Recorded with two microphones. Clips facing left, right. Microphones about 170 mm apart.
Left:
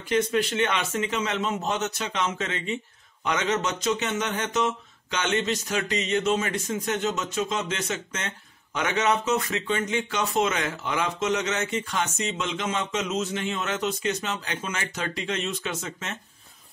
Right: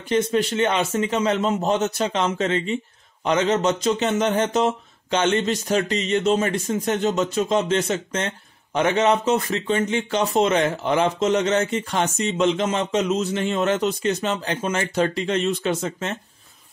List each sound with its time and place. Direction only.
0.1 s speech: 30° right (ahead or behind)